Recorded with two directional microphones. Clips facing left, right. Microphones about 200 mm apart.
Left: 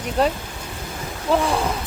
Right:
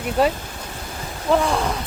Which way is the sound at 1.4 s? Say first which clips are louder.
Even; centre (ahead or behind).